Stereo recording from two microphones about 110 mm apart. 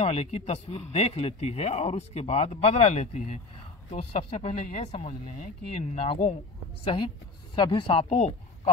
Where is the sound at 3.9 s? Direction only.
70° left (ahead or behind); by 5.5 s 85° left.